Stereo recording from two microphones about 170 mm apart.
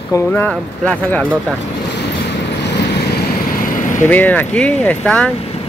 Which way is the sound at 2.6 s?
90° left.